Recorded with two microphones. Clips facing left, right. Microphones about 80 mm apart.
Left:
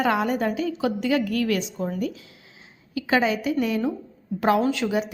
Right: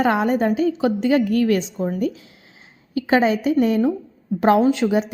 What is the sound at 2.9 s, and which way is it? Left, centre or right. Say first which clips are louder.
Speech: right 5 dB; right.